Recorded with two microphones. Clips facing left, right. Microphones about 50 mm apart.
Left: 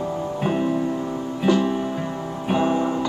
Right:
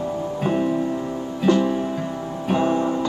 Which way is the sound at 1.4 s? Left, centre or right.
Centre.